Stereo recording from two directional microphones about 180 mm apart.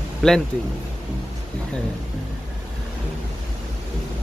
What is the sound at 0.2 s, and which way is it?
Speech, 5° left (ahead or behind).